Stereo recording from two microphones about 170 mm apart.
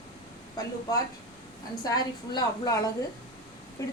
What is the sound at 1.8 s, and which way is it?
A woman's voice, 25° left (ahead or behind).